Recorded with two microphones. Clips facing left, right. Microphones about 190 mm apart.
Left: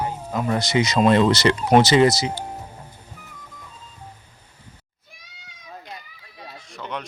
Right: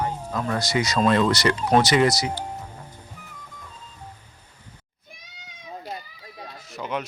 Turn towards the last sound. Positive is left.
turn(degrees=-5)  # may be behind; listen again after turning